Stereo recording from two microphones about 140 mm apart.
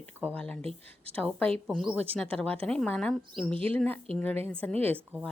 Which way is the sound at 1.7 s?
Centre (ahead or behind).